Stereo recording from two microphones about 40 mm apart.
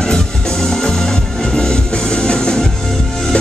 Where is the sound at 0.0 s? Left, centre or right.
Centre.